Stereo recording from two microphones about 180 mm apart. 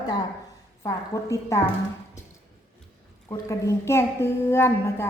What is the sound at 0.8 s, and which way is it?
Speech, 15° left (ahead or behind).